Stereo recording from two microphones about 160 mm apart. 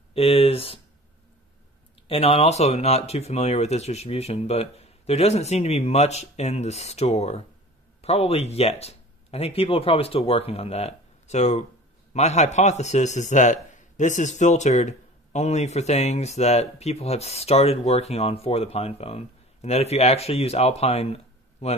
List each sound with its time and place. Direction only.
0.1 s speech: 35° left (ahead or behind)
2.0 s speech: 35° left (ahead or behind)